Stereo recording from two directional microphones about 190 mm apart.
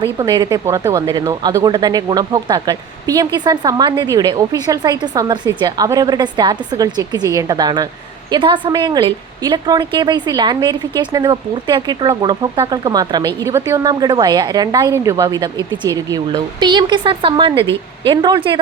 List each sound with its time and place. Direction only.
0.0 s a woman's voice: 20° right (ahead or behind)